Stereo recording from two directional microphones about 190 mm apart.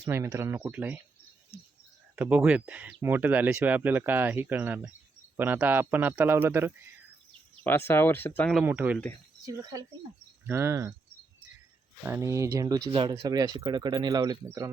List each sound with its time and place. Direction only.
0.0 s speech: 15° right (ahead or behind)
2.1 s speech: 10° right (ahead or behind)
7.6 s speech: 10° left (ahead or behind)
8.6 s speech: 10° right (ahead or behind)
12.0 s speech: 15° right (ahead or behind)